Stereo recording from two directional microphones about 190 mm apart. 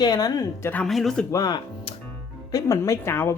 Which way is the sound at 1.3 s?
20° left (ahead or behind).